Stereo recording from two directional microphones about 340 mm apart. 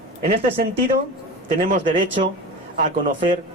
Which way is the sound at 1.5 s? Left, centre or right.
Right.